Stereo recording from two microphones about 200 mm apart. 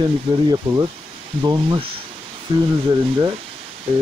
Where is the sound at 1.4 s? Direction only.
20° right (ahead or behind).